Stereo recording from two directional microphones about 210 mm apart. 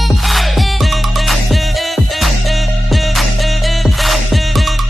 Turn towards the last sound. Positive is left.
turn(degrees=0)  # may be behind; listen again after turning